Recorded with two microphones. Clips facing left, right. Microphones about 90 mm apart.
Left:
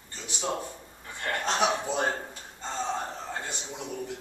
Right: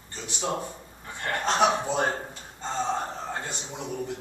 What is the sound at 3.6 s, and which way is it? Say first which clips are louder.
Speech: right 2 dB; 15° right (ahead or behind).